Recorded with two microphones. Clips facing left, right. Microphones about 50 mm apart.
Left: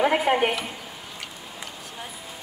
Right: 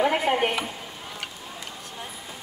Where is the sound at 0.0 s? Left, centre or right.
Centre.